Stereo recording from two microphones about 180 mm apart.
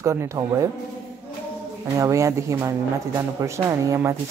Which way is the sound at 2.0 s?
15° right (ahead or behind).